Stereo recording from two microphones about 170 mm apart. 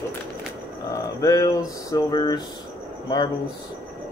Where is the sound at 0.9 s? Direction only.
20° left (ahead or behind).